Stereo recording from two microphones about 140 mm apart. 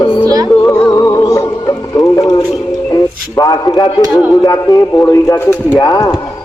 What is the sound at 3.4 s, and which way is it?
A man's voice, 25° left (ahead or behind).